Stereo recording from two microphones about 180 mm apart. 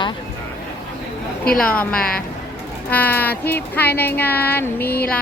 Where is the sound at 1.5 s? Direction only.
5° left (ahead or behind).